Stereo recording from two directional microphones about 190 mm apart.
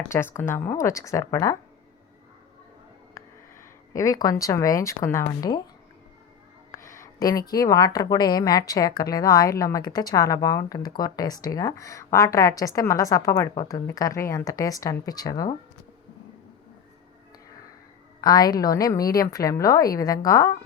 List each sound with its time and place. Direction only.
0.0 s a woman's voice: 10° left (ahead or behind)
3.2 s speech: 15° left (ahead or behind)
6.7 s a woman's voice: 15° left (ahead or behind)
18.2 s speech: 20° left (ahead or behind)